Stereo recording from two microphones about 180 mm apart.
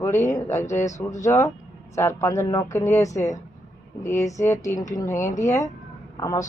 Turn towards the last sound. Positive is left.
turn(degrees=20)  # may be behind; listen again after turning